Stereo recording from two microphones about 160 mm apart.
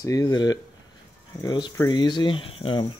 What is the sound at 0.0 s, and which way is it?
Speech, 20° left (ahead or behind).